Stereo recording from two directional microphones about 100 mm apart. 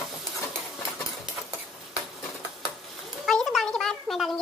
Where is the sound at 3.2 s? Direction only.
Centre (ahead or behind).